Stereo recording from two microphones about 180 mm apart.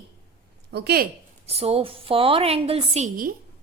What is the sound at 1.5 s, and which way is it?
A woman's voice, 35° right (ahead or behind).